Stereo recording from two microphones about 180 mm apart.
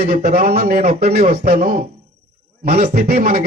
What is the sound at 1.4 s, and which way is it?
Speech, 50° right (ahead or behind).